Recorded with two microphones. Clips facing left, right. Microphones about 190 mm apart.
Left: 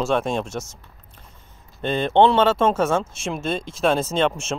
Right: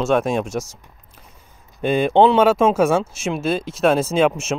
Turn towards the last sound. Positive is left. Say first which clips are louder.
# right 4 dB
turn(degrees=-5)  # may be behind; listen again after turning